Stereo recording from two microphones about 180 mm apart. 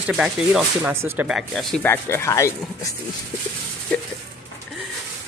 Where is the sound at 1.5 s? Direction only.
5° left (ahead or behind).